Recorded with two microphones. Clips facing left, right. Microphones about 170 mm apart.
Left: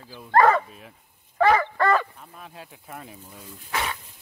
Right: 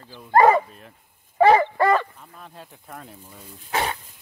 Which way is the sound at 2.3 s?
5° left (ahead or behind).